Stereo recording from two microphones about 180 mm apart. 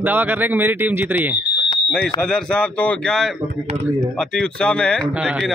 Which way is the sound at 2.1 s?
5° left (ahead or behind).